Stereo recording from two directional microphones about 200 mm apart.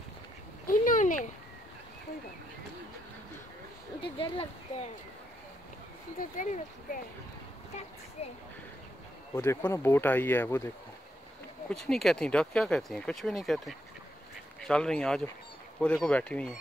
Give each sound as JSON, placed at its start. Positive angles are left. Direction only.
{"t": 0.7, "sound": "a sound", "side_deg": 40}
{"t": 4.0, "sound": "speech", "side_deg": 30}
{"t": 6.1, "sound": "speech", "side_deg": 40}
{"t": 9.3, "sound": "speech", "side_deg": 15}
{"t": 11.7, "sound": "speech", "side_deg": 0}